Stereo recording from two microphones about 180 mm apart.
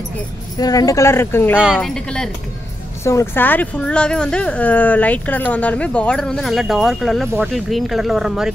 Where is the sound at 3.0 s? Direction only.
15° left (ahead or behind).